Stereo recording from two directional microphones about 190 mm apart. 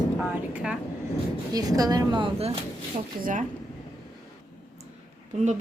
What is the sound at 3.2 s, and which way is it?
Speech, 45° right (ahead or behind).